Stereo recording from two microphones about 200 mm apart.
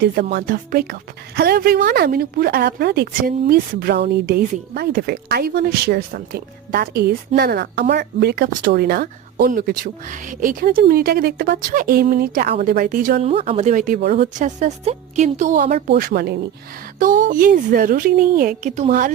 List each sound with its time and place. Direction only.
0.0 s speech: 50° right (ahead or behind)
13.3 s speech: 30° right (ahead or behind)
15.9 s speech: 50° right (ahead or behind)
17.0 s speech: 40° right (ahead or behind)